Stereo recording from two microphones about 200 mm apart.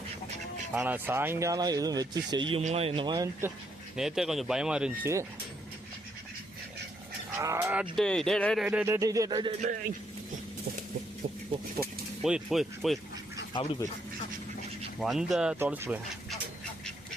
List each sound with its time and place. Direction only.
0.7 s speech: 10° right (ahead or behind); by 3.2 s 25° right (ahead or behind)
3.9 s speech: centre (ahead or behind)
7.3 s speech: 15° right (ahead or behind)
11.8 s speech: 5° right (ahead or behind)
13.5 s speech: 25° left (ahead or behind)
14.9 s speech: centre (ahead or behind)